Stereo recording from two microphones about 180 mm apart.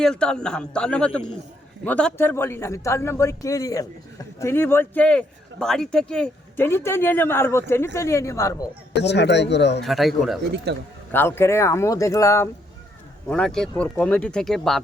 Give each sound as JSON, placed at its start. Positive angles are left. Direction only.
{"t": 0.0, "sound": "a man's voice", "side_deg": 5}
{"t": 9.0, "sound": "speech", "side_deg": 70}
{"t": 9.8, "sound": "a man's voice", "side_deg": 0}
{"t": 10.4, "sound": "speech", "side_deg": -70}
{"t": 11.1, "sound": "speech", "side_deg": 15}
{"t": 13.2, "sound": "a man's voice", "side_deg": 5}